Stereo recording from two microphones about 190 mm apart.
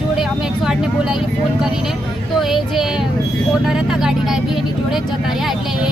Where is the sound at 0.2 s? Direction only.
Centre (ahead or behind).